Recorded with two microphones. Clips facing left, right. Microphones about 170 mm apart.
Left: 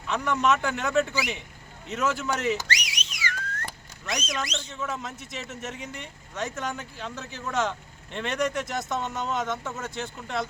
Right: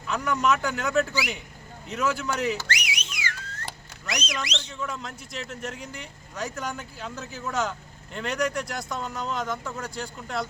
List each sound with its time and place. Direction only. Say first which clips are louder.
0.1 s speech: even; centre (ahead or behind)
2.6 s whistling: right 1 dB; 55° right (ahead or behind)
3.2 s a sound: left 6 dB; 55° left (ahead or behind)
4.4 s speech: even; 75° right (ahead or behind)
4.7 s speech: left 1 dB; 5° left (ahead or behind)